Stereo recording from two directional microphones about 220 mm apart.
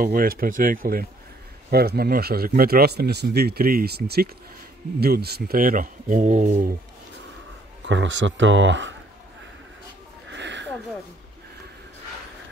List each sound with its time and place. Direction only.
0.0 s speech: 40° right (ahead or behind)
7.8 s speech: 55° right (ahead or behind)
10.3 s a sound: 55° right (ahead or behind)